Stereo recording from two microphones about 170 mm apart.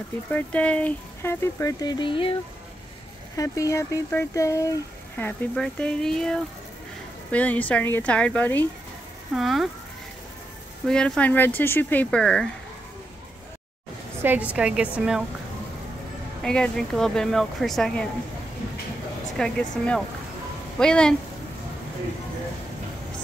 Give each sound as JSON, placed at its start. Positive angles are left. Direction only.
{"t": 0.3, "sound": "speech", "side_deg": 10}
{"t": 3.3, "sound": "speech", "side_deg": 20}
{"t": 10.9, "sound": "speech", "side_deg": 5}
{"t": 14.2, "sound": "a woman's voice", "side_deg": -10}
{"t": 16.4, "sound": "speech", "side_deg": 5}
{"t": 19.3, "sound": "speech", "side_deg": 5}